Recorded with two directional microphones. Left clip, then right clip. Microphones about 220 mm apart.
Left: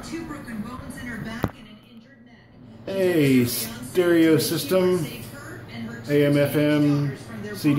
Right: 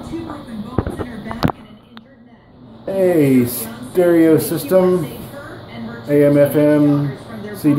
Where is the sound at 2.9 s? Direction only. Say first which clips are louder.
Right 7 dB; 20° left (ahead or behind).